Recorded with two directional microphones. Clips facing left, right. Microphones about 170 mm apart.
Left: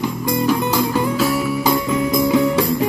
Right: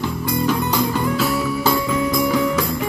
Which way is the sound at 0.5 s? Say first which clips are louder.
Left 2 dB; 10° left (ahead or behind).